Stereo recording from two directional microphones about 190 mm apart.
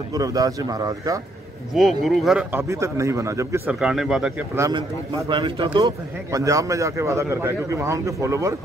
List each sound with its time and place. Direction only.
0.1 s a man's voice: 20° right (ahead or behind)
1.7 s a man's voice: centre (ahead or behind)
3.8 s speech: centre (ahead or behind)
4.6 s a man's voice: 15° right (ahead or behind)